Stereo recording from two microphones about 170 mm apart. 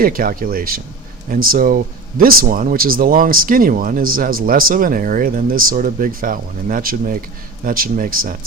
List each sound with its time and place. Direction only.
0.0 s speech: 60° right (ahead or behind)